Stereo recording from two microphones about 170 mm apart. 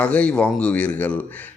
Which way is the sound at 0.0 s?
10° left (ahead or behind).